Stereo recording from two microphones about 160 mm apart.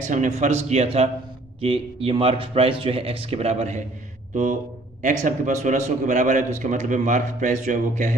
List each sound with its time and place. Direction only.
0.0 s speech: 50° right (ahead or behind)
5.0 s speech: 50° right (ahead or behind)